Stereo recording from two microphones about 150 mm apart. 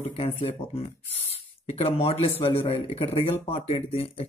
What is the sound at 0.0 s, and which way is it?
Speech, 40° left (ahead or behind).